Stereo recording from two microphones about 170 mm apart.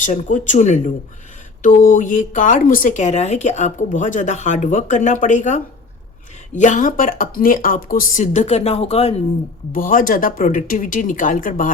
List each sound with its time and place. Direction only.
0.0 s a woman's voice: 50° left (ahead or behind)
9.7 s a woman's voice: 55° left (ahead or behind)